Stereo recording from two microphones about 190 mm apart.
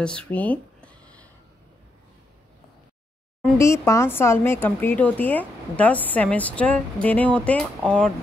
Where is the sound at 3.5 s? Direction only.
15° left (ahead or behind).